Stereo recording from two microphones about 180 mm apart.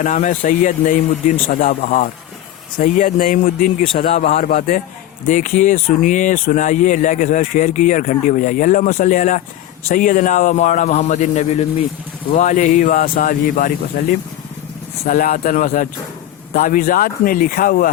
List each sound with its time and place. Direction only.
0.0 s speech: 45° left (ahead or behind)
3.8 s speech: 30° left (ahead or behind); by 13.7 s 50° left (ahead or behind)
15.0 s speech: 55° left (ahead or behind)